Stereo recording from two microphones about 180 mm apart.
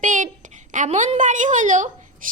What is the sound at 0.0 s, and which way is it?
A woman's voice, 45° right (ahead or behind).